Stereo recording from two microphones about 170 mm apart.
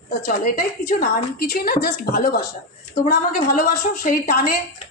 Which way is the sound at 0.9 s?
65° left (ahead or behind).